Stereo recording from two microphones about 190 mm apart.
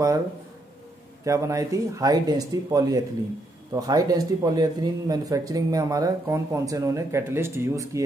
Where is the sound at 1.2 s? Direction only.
15° right (ahead or behind).